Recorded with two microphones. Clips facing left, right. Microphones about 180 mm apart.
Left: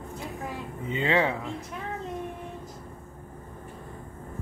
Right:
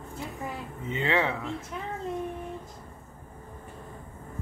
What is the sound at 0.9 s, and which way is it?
Speech, 15° left (ahead or behind).